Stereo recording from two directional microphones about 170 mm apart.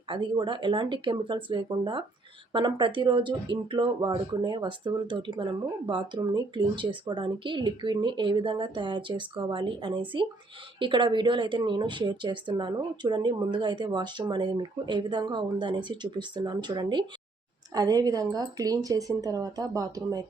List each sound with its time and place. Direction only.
0.1 s speech: 30° right (ahead or behind)